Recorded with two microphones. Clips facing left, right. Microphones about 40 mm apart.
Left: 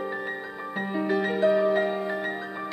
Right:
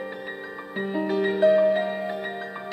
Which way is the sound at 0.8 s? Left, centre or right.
Centre.